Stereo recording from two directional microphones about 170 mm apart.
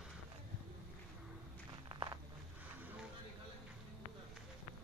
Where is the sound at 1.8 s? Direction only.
25° right (ahead or behind).